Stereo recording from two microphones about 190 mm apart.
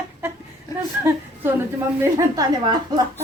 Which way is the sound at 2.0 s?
20° right (ahead or behind).